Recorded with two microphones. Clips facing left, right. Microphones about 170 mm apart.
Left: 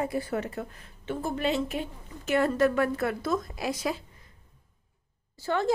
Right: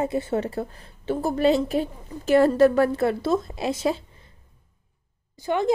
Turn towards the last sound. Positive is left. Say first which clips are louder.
# right 4 dB
turn(degrees=-15)  # may be behind; listen again after turning